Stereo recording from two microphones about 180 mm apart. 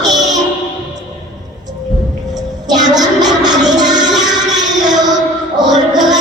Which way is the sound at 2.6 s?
20° right (ahead or behind).